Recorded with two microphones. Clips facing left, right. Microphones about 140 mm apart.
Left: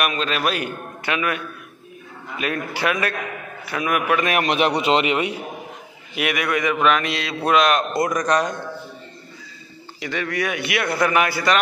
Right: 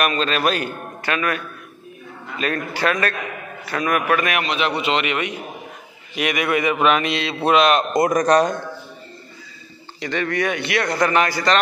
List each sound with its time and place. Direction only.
0.0 s a man's voice: 5° left (ahead or behind)
4.4 s speech: 55° left (ahead or behind)
4.8 s a man's voice: 30° left (ahead or behind)
6.1 s a man's voice: 5° left (ahead or behind)
8.1 s a man's voice: 35° right (ahead or behind)
9.9 s a man's voice: 5° left (ahead or behind)